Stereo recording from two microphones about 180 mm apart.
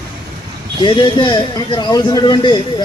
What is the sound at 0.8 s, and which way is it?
A man's voice, 25° left (ahead or behind).